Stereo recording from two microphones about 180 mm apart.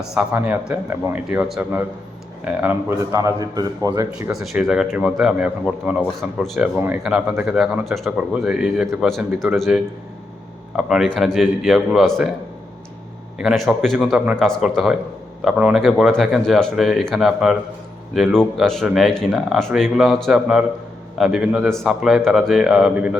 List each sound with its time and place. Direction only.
0.0 s a man's voice: 5° right (ahead or behind)
3.1 s a man's voice: 20° right (ahead or behind)
4.3 s speech: centre (ahead or behind)
6.7 s speech: 10° right (ahead or behind)
13.4 s speech: 5° right (ahead or behind)